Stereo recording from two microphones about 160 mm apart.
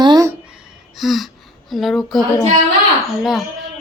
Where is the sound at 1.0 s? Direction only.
Centre (ahead or behind).